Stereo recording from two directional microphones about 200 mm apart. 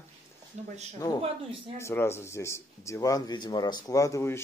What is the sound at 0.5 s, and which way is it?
Speech, 40° right (ahead or behind).